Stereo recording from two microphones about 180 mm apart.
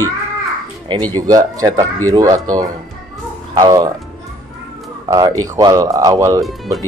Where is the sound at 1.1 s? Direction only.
20° right (ahead or behind).